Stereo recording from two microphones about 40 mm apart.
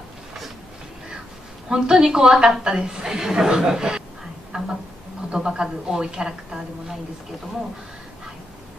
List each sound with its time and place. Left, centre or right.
1.7 s a woman's voice: centre
4.5 s a sound: right
5.3 s a man's voice: right